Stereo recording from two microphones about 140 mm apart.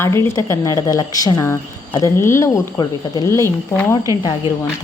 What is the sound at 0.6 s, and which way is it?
Speech, 25° left (ahead or behind).